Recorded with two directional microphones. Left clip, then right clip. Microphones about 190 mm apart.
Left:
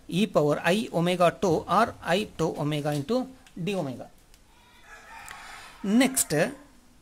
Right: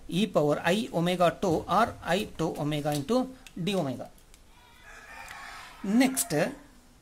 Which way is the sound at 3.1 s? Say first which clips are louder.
Even; centre (ahead or behind).